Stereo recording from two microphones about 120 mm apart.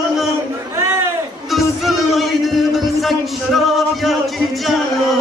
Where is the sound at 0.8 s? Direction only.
20° right (ahead or behind).